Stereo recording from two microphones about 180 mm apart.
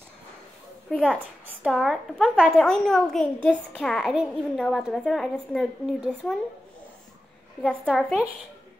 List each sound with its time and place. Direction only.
0.8 s a woman's voice: 5° right (ahead or behind)
7.6 s a woman's voice: 5° left (ahead or behind)